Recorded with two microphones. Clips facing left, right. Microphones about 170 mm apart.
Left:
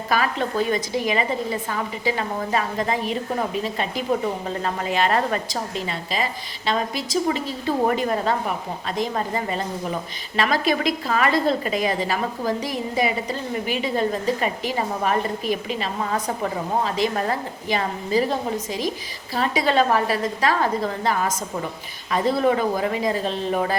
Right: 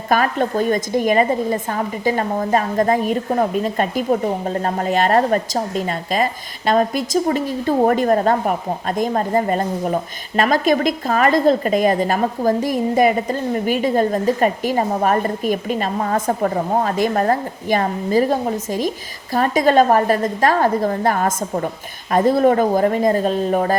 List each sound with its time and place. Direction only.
0.1 s a woman's voice: 45° right (ahead or behind)